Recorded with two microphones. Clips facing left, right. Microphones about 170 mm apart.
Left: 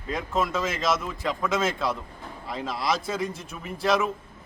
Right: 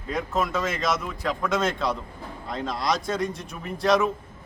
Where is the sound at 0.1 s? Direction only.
Centre (ahead or behind).